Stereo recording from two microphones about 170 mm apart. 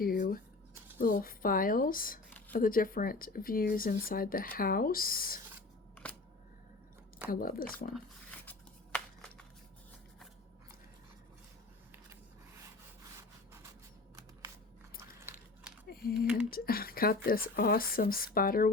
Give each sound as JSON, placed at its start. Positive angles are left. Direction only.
{"t": 0.0, "sound": "a sound", "side_deg": 60}
{"t": 0.9, "sound": "speech", "side_deg": 50}
{"t": 7.3, "sound": "speech", "side_deg": 60}
{"t": 13.1, "sound": "rub", "side_deg": -15}
{"t": 15.9, "sound": "speech", "side_deg": 60}